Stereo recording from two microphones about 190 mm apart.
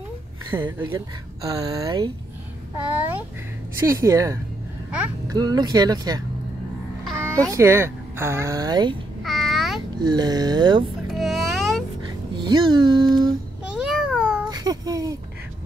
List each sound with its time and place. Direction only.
0.5 s speech: 25° right (ahead or behind)
3.8 s a woman's voice: 15° right (ahead or behind)
7.2 s music: 15° right (ahead or behind)
7.5 s a woman's voice: 15° right (ahead or behind)
9.2 s a sound: centre (ahead or behind)
10.0 s speech: 20° right (ahead or behind)
11.1 s insect: centre (ahead or behind)
12.4 s speech: 25° right (ahead or behind)
13.8 s a sound: 5° right (ahead or behind)
14.5 s speech: 20° right (ahead or behind)